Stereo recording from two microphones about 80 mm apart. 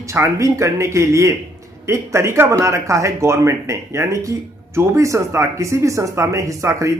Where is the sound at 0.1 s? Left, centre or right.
Right.